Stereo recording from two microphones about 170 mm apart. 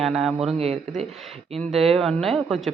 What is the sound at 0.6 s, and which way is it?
Speech, 40° right (ahead or behind).